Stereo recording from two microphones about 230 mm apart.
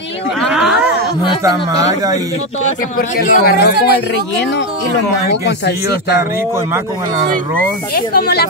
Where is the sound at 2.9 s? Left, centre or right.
Left.